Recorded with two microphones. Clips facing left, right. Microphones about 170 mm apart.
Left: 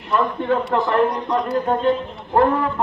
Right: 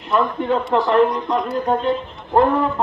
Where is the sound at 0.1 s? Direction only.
20° right (ahead or behind).